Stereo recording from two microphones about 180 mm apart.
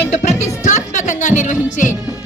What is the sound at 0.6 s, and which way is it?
Music, 40° left (ahead or behind).